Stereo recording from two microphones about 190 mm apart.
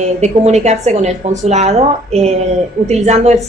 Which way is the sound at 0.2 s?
35° right (ahead or behind).